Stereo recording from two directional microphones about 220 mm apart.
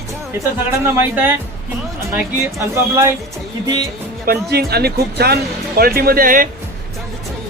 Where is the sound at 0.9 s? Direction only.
10° right (ahead or behind).